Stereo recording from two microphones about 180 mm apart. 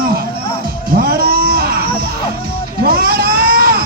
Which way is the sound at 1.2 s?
55° right (ahead or behind).